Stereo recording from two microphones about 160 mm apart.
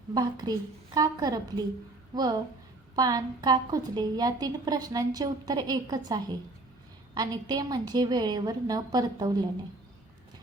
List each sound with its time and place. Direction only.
0.1 s a woman's voice: 25° right (ahead or behind)